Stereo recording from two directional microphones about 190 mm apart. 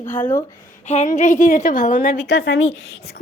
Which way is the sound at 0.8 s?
35° left (ahead or behind).